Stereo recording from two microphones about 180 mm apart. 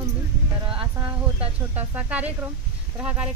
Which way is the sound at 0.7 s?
30° right (ahead or behind).